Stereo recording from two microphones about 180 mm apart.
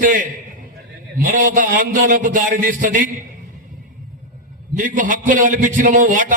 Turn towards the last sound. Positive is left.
turn(degrees=-45)  # may be behind; listen again after turning